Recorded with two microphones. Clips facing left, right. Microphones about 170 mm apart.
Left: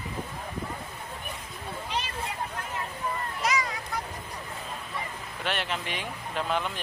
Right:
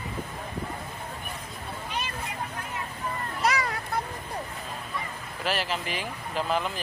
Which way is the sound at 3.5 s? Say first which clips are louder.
Right 1 dB; 60° right (ahead or behind).